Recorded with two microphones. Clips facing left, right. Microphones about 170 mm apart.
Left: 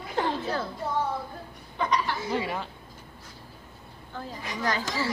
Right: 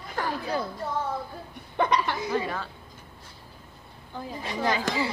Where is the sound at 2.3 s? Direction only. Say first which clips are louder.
Right 1 dB; 20° left (ahead or behind).